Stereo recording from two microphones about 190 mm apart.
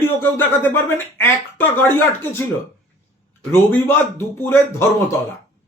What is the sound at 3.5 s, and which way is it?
Speech, 10° left (ahead or behind).